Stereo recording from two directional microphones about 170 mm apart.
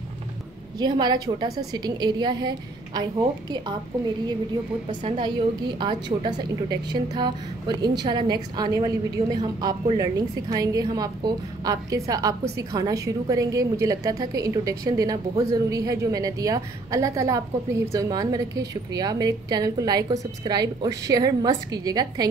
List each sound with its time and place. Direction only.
0.7 s a woman's voice: 25° right (ahead or behind)
5.0 s a woman's voice: 30° right (ahead or behind)